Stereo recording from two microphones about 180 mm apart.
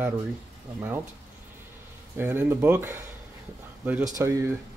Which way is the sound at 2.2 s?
10° right (ahead or behind).